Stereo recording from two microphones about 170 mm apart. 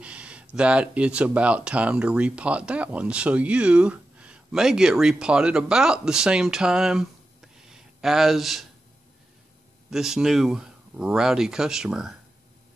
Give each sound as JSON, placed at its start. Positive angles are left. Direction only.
{"t": 0.0, "sound": "speech", "side_deg": -5}
{"t": 9.8, "sound": "speech", "side_deg": 0}